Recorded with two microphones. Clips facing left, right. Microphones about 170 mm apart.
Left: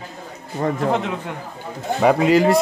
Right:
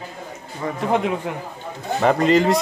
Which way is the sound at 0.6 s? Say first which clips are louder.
Left 5 dB; 50° left (ahead or behind).